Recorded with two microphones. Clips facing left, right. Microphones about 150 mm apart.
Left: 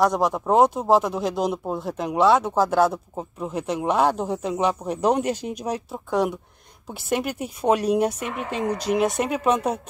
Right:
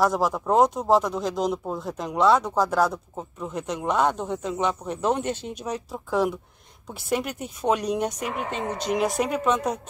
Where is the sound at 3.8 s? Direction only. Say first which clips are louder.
Left 2 dB; 30° left (ahead or behind).